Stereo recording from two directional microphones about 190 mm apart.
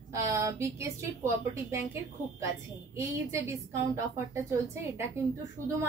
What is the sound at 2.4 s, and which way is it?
A woman's voice, 15° right (ahead or behind).